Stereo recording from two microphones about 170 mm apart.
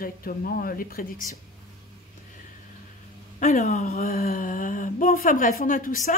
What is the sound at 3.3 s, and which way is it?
Speech, 45° left (ahead or behind).